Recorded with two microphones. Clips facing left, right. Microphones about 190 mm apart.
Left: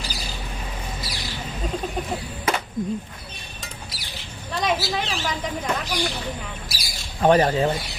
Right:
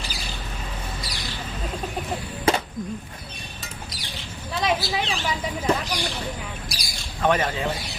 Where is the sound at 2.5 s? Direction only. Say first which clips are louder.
Right 3 dB; 30° right (ahead or behind).